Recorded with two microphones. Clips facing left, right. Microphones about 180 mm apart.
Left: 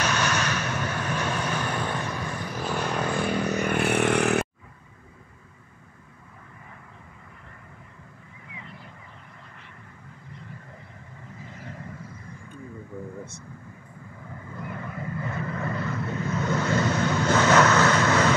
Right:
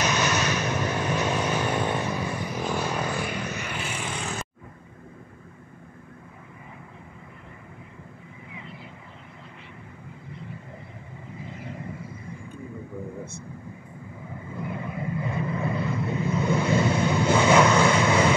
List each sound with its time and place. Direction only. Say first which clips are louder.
0.0 s vehicle: right 1 dB; 10° right (ahead or behind)
3.5 s vehicle: left 10 dB; 50° left (ahead or behind); by 4.5 s 70° left (ahead or behind)
14.5 s vehicle: right 3 dB; 10° right (ahead or behind)